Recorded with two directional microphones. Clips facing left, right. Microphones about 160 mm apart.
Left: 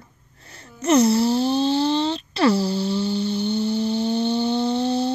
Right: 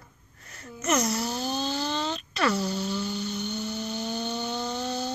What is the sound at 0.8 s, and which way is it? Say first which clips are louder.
Wail: left 10 dB; 30° left (ahead or behind).